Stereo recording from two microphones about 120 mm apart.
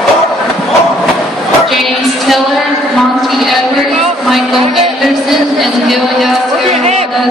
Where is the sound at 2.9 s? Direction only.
Centre (ahead or behind).